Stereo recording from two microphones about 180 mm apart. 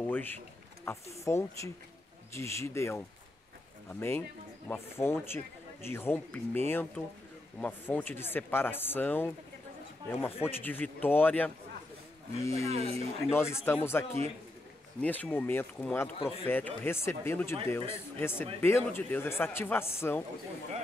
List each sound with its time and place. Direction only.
0.0 s a sound: 10° left (ahead or behind)
0.9 s speech: 10° left (ahead or behind)
7.6 s speech: 10° left (ahead or behind)
16.2 s a man's voice: 30° left (ahead or behind)
16.4 s speech: 10° left (ahead or behind)